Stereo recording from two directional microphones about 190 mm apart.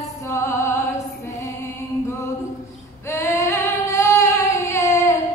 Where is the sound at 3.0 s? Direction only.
15° left (ahead or behind).